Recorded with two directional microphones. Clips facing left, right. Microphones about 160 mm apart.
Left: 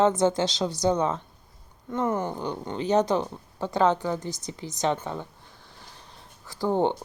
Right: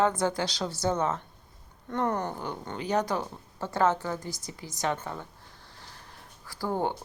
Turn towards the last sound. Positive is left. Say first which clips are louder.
# left 6 dB
turn(degrees=20)  # may be behind; listen again after turning